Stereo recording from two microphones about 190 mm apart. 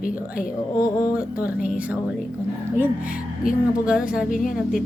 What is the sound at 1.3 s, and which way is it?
Speech, 5° right (ahead or behind).